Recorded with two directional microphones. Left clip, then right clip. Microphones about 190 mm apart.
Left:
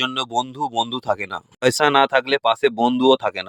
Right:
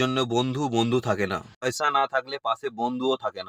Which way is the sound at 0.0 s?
50° left (ahead or behind).